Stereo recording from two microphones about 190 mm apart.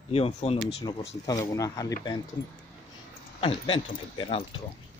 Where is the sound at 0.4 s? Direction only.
35° left (ahead or behind).